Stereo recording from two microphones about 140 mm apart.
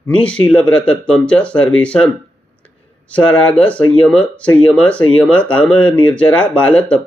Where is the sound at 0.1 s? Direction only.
10° left (ahead or behind).